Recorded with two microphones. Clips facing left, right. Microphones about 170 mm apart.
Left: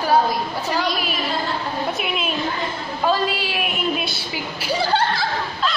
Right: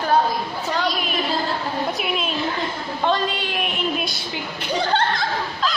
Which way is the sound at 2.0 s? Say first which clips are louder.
Even; 5° left (ahead or behind).